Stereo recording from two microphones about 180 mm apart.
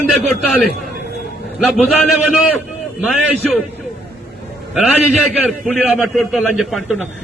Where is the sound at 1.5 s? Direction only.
Centre (ahead or behind).